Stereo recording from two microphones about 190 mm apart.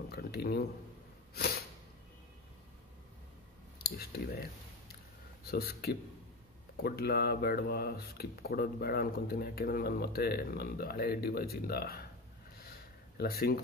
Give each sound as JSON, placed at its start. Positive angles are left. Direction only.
{"t": 0.1, "sound": "speech", "side_deg": 55}
{"t": 3.8, "sound": "speech", "side_deg": 55}
{"t": 5.5, "sound": "speech", "side_deg": 55}
{"t": 13.2, "sound": "speech", "side_deg": 55}